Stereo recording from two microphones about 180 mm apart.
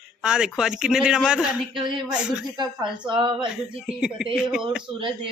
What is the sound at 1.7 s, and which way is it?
Speech, 25° right (ahead or behind).